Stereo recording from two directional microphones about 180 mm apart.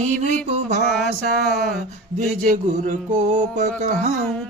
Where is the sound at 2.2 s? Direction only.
45° right (ahead or behind).